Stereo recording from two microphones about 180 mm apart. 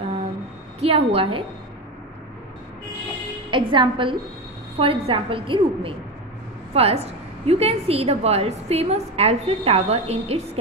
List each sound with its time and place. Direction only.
0.7 s a woman's voice: 35° right (ahead or behind)
3.4 s a woman's voice: 25° right (ahead or behind)